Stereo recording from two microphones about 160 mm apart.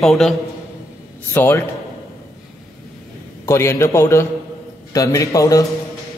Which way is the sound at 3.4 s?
15° left (ahead or behind).